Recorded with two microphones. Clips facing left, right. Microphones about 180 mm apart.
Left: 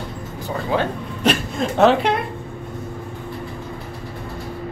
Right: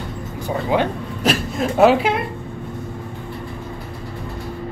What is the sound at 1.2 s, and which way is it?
Speech, 5° right (ahead or behind).